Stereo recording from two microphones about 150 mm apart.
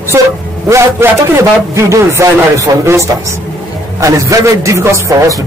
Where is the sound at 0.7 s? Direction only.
20° right (ahead or behind).